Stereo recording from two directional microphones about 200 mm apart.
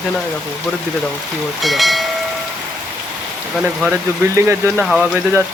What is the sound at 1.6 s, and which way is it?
Speech, centre (ahead or behind).